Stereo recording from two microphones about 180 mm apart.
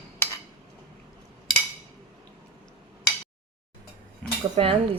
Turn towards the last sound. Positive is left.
turn(degrees=-30)  # may be behind; listen again after turning